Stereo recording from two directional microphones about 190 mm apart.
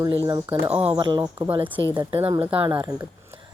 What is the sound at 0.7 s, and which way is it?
Speech, 30° right (ahead or behind).